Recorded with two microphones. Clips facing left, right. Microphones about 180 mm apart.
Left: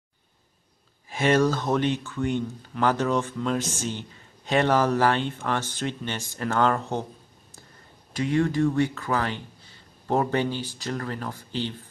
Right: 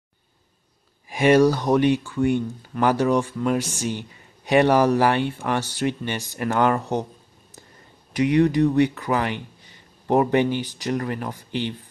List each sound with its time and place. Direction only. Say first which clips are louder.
1.1 s speech: right 5 dB; 15° right (ahead or behind)
8.1 s speech: right 5 dB; 15° right (ahead or behind)